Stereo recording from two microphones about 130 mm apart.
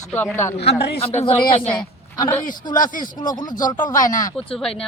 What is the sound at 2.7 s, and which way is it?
Speech, 90° left.